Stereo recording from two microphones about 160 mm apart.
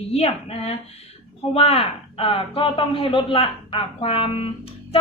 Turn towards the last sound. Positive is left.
turn(degrees=35)  # may be behind; listen again after turning